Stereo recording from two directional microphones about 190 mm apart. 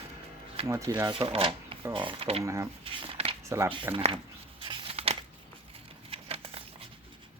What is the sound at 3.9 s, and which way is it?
Speech, 25° right (ahead or behind).